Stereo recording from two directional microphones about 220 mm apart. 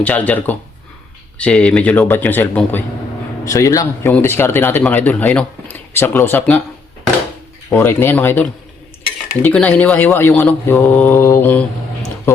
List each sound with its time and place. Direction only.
0.0 s a man's voice: 5° left (ahead or behind)
7.7 s a man's voice: 10° left (ahead or behind)